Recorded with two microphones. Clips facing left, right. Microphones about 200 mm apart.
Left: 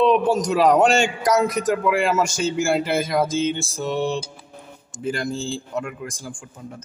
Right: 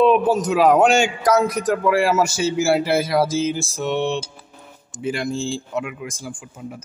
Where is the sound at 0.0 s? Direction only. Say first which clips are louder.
Right 2 dB; 5° right (ahead or behind).